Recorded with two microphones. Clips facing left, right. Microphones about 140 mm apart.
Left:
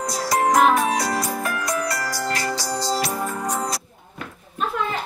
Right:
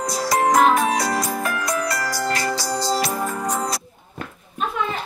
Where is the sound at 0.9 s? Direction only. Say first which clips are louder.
Right 1 dB; 90° right.